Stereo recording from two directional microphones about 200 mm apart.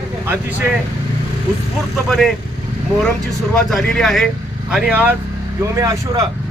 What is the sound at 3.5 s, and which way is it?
Speech, 5° left (ahead or behind).